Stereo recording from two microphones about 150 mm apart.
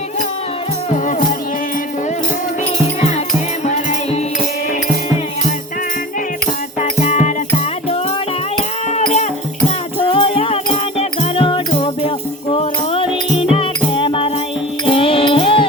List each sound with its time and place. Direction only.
3.7 s music: 50° left (ahead or behind)
6.7 s music: 50° left (ahead or behind)
10.1 s music: 40° left (ahead or behind)